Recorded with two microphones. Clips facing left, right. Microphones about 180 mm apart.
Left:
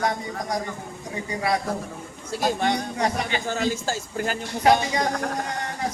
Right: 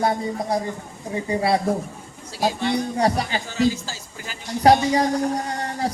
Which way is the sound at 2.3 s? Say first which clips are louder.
Even; 55° left (ahead or behind).